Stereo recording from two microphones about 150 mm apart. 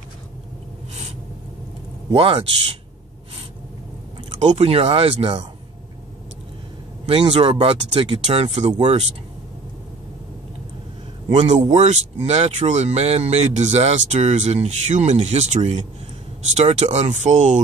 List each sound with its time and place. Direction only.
2.1 s speech: 40° right (ahead or behind)
4.4 s speech: 45° right (ahead or behind)
7.1 s speech: 40° right (ahead or behind)
11.3 s speech: 45° right (ahead or behind)